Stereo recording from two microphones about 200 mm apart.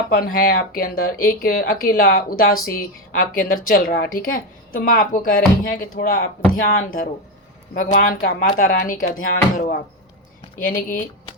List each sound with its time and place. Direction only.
0.1 s speech: 45° left (ahead or behind)